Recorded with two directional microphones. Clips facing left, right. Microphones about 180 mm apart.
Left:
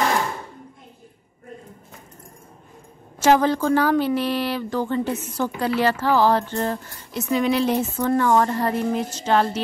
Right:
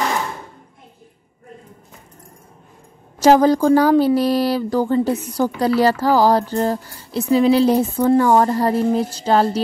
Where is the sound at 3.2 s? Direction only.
40° right (ahead or behind).